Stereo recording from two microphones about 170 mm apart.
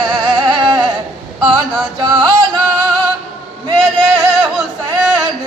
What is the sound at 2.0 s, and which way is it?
Music, 25° right (ahead or behind).